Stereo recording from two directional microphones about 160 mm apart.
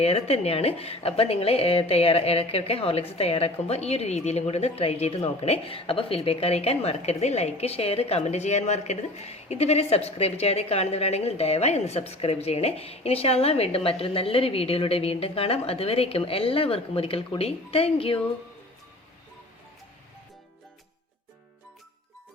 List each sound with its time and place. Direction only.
0.0 s a woman's voice: 40° left (ahead or behind)